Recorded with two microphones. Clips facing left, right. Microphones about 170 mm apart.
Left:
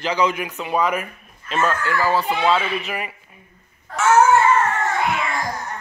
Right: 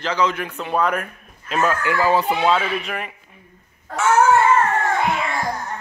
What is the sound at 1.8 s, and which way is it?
Speech, 15° right (ahead or behind).